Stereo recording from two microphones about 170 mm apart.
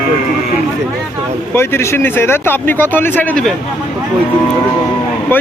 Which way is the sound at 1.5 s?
15° left (ahead or behind).